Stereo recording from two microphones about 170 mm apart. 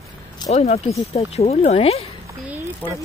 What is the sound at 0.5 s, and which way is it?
Speech, 40° left (ahead or behind).